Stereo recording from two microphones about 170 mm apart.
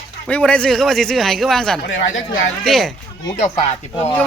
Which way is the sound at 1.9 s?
90° left.